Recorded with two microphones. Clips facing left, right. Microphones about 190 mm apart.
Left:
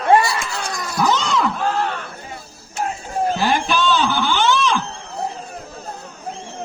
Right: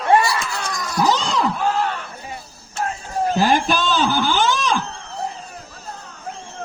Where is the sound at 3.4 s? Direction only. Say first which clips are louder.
Right 4 dB; 45° right (ahead or behind).